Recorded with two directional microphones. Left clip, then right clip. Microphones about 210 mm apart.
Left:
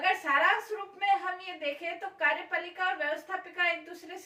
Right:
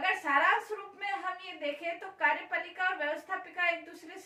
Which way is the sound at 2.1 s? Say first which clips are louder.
Left 1 dB; centre (ahead or behind).